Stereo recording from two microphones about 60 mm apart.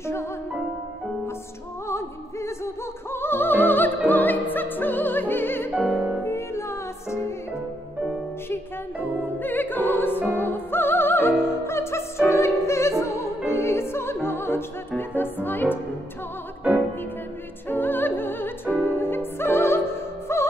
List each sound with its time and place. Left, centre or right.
0.0 s music: left
1.9 s opera: left
4.1 s music: left
5.8 s music: centre
6.2 s music: left
9.4 s opera: left
10.3 s music: left
17.6 s music: left